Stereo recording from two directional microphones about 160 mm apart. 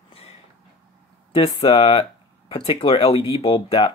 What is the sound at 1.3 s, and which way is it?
Speech, 35° left (ahead or behind).